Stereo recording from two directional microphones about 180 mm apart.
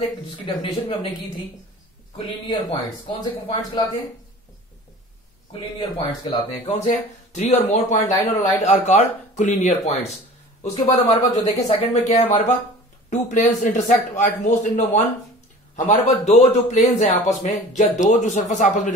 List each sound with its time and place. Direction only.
0.5 s speech: 25° left (ahead or behind)
2.1 s speech: 25° left (ahead or behind)
5.5 s speech: 30° left (ahead or behind)
6.5 s a man's voice: 40° left (ahead or behind)